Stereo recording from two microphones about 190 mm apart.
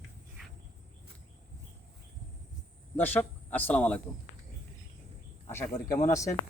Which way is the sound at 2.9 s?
10° left (ahead or behind).